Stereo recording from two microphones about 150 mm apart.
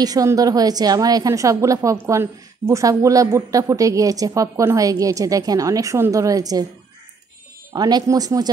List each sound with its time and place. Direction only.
0.0 s a woman's voice: 25° right (ahead or behind)
7.7 s a woman's voice: 25° right (ahead or behind)